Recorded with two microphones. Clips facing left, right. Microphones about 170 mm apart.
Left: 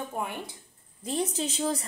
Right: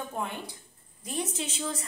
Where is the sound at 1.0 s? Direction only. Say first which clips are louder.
Left 4 dB; 30° left (ahead or behind).